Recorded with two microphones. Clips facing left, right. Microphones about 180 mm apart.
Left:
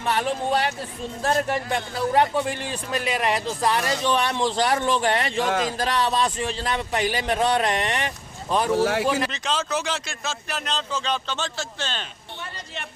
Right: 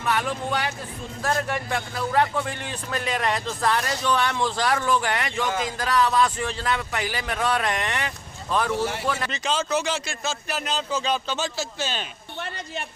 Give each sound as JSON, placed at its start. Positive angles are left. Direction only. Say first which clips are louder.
{"t": 0.0, "sound": "speech", "louder": "left 2 dB", "side_deg": 30}
{"t": 2.9, "sound": "a man's voice", "louder": "left 2 dB", "side_deg": 10}
{"t": 5.5, "sound": "speech", "louder": "left 4 dB", "side_deg": 70}
{"t": 5.7, "sound": "speech", "louder": "right 1 dB", "side_deg": 30}
{"t": 6.4, "sound": "a man's voice", "louder": "left 1 dB", "side_deg": 20}
{"t": 6.7, "sound": "speech", "louder": "left 4 dB", "side_deg": 30}
{"t": 8.8, "sound": "speech", "louder": "left 6 dB", "side_deg": 90}
{"t": 9.3, "sound": "speech", "louder": "right 1 dB", "side_deg": 0}